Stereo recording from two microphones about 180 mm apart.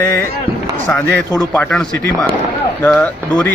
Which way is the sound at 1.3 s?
20° left (ahead or behind).